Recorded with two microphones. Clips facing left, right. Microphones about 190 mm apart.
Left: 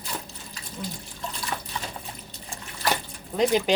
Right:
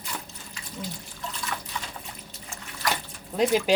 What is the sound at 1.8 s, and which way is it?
Drip, 30° left (ahead or behind).